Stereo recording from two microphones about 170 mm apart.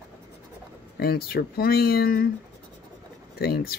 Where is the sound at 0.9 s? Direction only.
65° left (ahead or behind).